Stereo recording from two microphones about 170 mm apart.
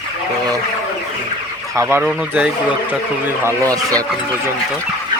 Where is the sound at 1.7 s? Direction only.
15° right (ahead or behind).